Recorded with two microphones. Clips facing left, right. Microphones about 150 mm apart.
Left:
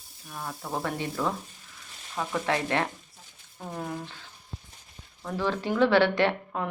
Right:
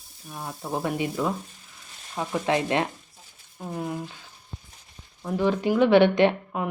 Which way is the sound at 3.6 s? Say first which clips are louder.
Right 3 dB; 5° right (ahead or behind).